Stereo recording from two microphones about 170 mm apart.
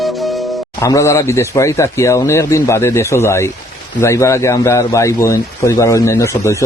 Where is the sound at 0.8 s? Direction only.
20° left (ahead or behind).